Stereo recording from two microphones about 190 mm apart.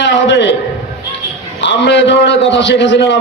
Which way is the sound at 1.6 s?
70° left (ahead or behind).